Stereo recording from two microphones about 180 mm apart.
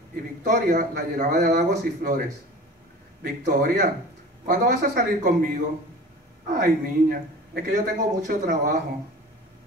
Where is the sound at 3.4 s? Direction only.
50° right (ahead or behind).